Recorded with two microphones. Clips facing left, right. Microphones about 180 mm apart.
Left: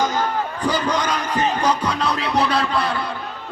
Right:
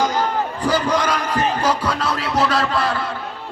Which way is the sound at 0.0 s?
10° right (ahead or behind).